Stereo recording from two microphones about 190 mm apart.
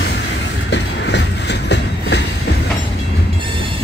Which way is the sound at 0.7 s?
65° left (ahead or behind).